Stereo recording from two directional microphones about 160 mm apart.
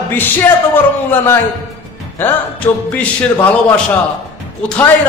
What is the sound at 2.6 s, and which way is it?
A capella, 20° left (ahead or behind).